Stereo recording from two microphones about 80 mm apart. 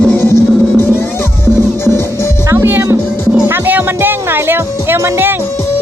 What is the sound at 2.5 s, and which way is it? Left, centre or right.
Music, right.